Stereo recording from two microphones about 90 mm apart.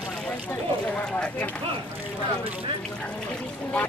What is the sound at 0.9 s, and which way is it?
Speech, 15° left (ahead or behind).